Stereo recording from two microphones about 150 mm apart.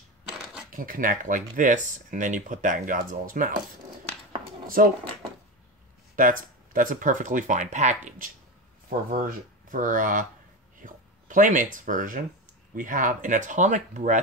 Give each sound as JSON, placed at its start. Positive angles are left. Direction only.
{"t": 0.7, "sound": "speech", "side_deg": -65}
{"t": 4.6, "sound": "speech", "side_deg": -70}
{"t": 6.1, "sound": "speech", "side_deg": -65}
{"t": 8.8, "sound": "speech", "side_deg": -70}